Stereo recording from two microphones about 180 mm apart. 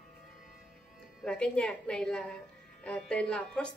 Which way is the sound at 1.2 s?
5° left (ahead or behind).